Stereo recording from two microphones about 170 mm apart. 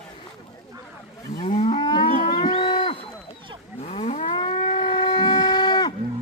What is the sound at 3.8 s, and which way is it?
Livestock, 40° left (ahead or behind).